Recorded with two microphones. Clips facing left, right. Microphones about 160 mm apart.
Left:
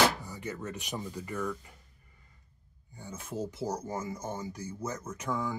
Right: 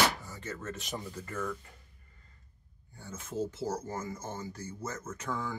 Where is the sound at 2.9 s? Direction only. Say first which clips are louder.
Right 1 dB; 15° left (ahead or behind).